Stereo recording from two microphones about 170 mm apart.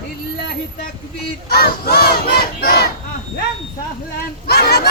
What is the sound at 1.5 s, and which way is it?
Battle cry, 65° left (ahead or behind).